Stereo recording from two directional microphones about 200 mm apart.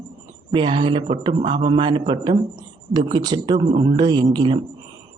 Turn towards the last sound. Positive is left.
turn(degrees=-25)  # may be behind; listen again after turning